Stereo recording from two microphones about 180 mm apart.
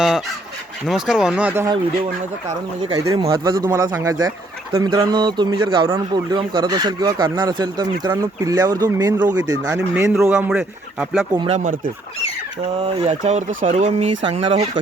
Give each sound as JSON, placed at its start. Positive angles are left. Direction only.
{"t": 0.9, "sound": "speech", "side_deg": -5}
{"t": 2.9, "sound": "a man's voice", "side_deg": -25}
{"t": 11.3, "sound": "speech", "side_deg": -40}
{"t": 13.1, "sound": "speech", "side_deg": -40}